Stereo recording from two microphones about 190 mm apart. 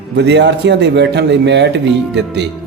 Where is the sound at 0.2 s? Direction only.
65° right (ahead or behind).